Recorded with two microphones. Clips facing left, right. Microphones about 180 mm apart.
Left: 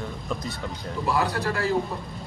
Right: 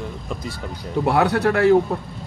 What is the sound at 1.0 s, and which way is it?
Speech, 75° right (ahead or behind).